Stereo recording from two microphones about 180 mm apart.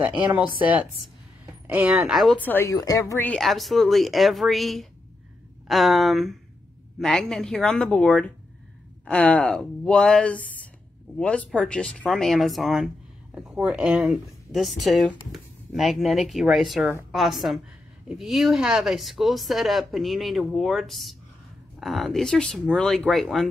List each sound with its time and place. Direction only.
1.7 s speech: 10° right (ahead or behind)